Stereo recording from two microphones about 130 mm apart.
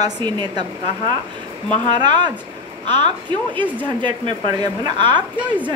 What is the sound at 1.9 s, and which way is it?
A woman's voice, 35° right (ahead or behind).